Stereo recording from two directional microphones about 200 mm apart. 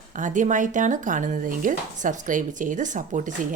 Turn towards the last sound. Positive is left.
turn(degrees=-40)  # may be behind; listen again after turning